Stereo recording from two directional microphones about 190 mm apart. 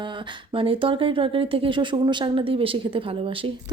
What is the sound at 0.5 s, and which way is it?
Speech, 30° right (ahead or behind).